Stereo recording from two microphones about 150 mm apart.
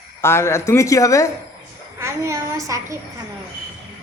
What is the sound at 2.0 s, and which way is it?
A woman's voice, 20° right (ahead or behind).